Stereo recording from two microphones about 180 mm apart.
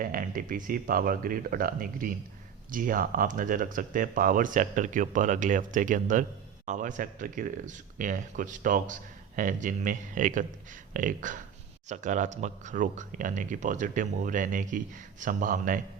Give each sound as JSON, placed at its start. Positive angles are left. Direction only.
{"t": 0.0, "sound": "speech", "side_deg": -50}